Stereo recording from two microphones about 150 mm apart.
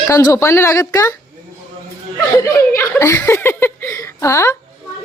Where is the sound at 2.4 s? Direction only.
20° left (ahead or behind).